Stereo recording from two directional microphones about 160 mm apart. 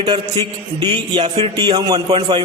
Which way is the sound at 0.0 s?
30° right (ahead or behind).